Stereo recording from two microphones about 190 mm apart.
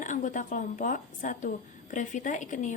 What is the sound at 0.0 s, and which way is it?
A woman's voice, 40° left (ahead or behind).